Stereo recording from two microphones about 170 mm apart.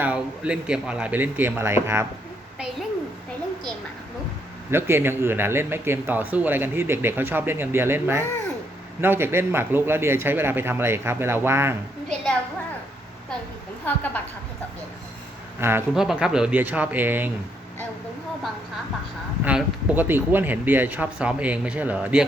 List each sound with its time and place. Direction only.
0.0 s speech: 5° right (ahead or behind)
4.7 s speech: 15° right (ahead or behind)
12.0 s a sound: 5° left (ahead or behind)
13.8 s a woman's voice: 10° left (ahead or behind)
15.6 s speech: 15° right (ahead or behind)
16.0 s speech: 5° right (ahead or behind)
19.5 s speech: 10° right (ahead or behind)